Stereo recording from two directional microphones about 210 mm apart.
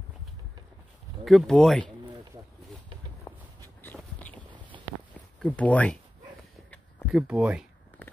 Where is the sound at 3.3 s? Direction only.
15° left (ahead or behind).